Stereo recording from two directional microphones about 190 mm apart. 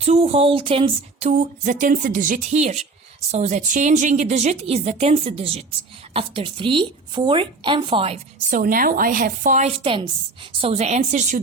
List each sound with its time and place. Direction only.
0.0 s speech: 35° right (ahead or behind)
1.3 s a woman's voice: 45° right (ahead or behind)
8.4 s a woman's voice: 45° right (ahead or behind)